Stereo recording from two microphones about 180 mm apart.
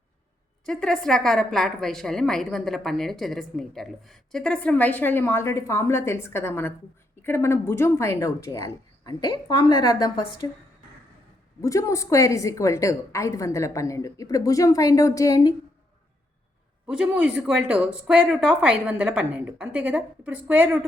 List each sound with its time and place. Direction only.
0.6 s a woman's voice: 5° left (ahead or behind); by 10.2 s 25° left (ahead or behind)
11.6 s a woman's voice: 15° left (ahead or behind)
16.8 s speech: 5° right (ahead or behind)